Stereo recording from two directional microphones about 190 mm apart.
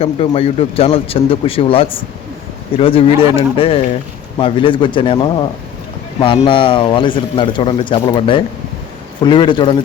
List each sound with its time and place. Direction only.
0.0 s speech: 30° left (ahead or behind)